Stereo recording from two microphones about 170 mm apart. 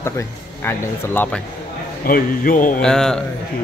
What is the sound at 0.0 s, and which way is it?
Speech, 15° left (ahead or behind).